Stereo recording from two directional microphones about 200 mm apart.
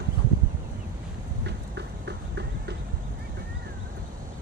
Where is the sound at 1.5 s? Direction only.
60° right (ahead or behind).